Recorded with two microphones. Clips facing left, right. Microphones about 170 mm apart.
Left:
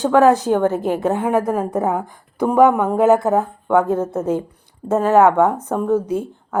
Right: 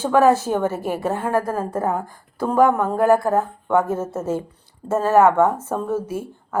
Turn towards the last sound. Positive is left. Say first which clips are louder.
# left 5 dB
turn(degrees=20)  # may be behind; listen again after turning